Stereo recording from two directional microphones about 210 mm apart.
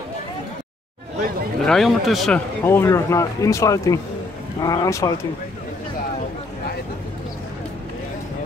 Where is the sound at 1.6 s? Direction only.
Centre (ahead or behind).